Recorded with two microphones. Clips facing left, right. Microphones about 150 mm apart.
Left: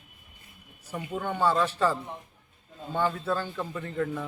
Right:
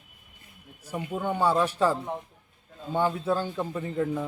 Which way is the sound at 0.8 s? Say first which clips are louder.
Right 2 dB; 10° right (ahead or behind).